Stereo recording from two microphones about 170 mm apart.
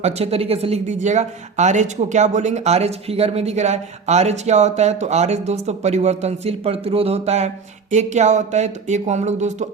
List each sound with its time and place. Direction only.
0.0 s speech: 35° right (ahead or behind)